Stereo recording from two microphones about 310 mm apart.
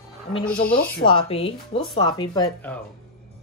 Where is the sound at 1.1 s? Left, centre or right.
Centre.